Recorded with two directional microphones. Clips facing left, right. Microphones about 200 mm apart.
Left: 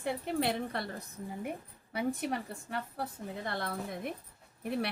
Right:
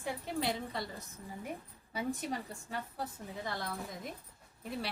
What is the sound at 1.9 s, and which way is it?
A woman's voice, 65° left (ahead or behind).